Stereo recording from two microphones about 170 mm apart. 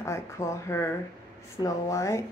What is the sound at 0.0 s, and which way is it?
Speech, 15° left (ahead or behind).